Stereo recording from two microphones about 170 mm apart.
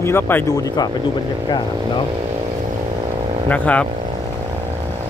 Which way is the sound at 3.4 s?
10° left (ahead or behind).